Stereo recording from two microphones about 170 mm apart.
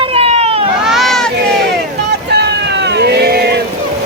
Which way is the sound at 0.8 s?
Centre (ahead or behind).